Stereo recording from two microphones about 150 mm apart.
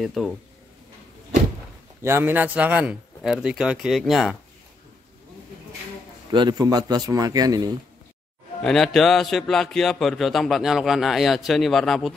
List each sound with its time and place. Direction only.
0.0 s speech: centre (ahead or behind)
2.0 s a man's voice: 15° right (ahead or behind)
6.3 s a man's voice: 30° right (ahead or behind)
8.6 s speech: 5° left (ahead or behind)